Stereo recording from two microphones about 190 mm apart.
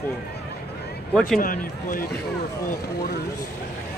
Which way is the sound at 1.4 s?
45° left (ahead or behind).